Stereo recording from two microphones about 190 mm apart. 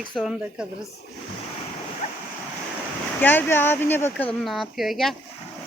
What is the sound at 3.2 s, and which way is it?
Speech, 10° left (ahead or behind).